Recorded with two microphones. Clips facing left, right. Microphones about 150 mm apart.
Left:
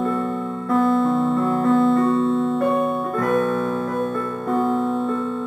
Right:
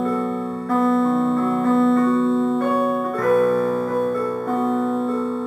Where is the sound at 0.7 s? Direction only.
Centre (ahead or behind).